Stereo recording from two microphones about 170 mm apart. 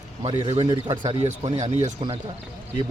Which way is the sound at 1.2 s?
40° right (ahead or behind).